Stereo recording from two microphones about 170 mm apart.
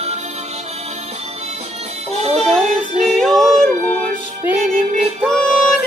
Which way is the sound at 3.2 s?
Centre (ahead or behind).